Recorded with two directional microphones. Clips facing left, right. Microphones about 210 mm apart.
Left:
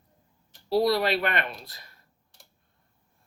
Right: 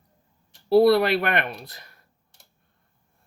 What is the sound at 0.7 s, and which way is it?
Speech, 60° right (ahead or behind).